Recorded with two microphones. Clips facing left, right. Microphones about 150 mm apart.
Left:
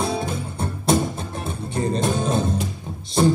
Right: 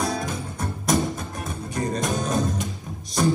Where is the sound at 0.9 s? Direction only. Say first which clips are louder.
Left 3 dB; 30° left (ahead or behind).